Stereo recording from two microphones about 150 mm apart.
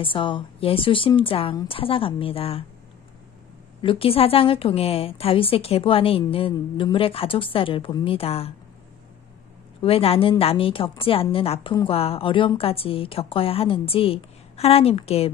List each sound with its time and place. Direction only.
0.0 s a woman's voice: 35° left (ahead or behind)
3.8 s a woman's voice: 35° left (ahead or behind)
9.8 s a woman's voice: 40° left (ahead or behind)